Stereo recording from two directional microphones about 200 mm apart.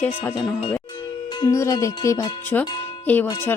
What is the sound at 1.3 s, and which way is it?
Speech, 20° left (ahead or behind).